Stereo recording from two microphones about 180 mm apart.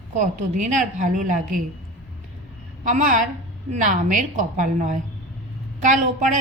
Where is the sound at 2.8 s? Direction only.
45° right (ahead or behind).